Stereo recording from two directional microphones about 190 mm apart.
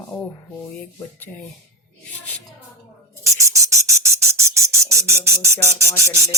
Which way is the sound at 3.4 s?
15° right (ahead or behind).